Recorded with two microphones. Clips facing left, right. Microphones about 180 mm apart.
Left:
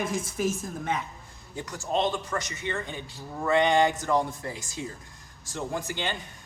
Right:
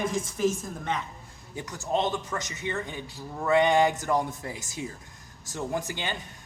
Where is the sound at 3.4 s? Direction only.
10° right (ahead or behind).